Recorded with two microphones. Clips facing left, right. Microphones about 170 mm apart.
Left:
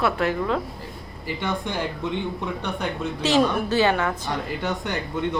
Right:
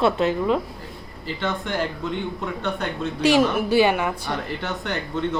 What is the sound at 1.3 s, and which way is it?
Speech, 15° left (ahead or behind).